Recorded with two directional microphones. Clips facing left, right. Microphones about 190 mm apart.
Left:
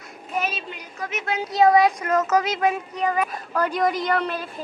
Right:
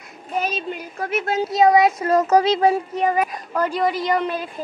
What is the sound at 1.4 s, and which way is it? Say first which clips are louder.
Speech: right 1 dB; 25° right (ahead or behind).